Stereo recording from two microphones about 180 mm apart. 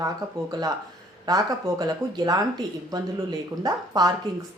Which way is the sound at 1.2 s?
20° right (ahead or behind).